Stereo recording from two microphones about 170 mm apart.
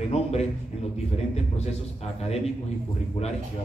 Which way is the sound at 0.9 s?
40° left (ahead or behind).